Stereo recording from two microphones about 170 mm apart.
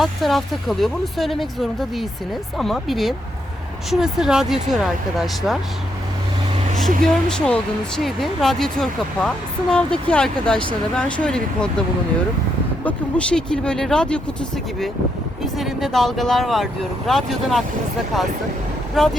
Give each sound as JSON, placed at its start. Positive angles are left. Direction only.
{"t": 0.0, "sound": "speech", "side_deg": 0}
{"t": 6.7, "sound": "speech", "side_deg": 0}
{"t": 12.8, "sound": "speech", "side_deg": 5}
{"t": 15.5, "sound": "speech", "side_deg": 0}
{"t": 19.0, "sound": "speech", "side_deg": 0}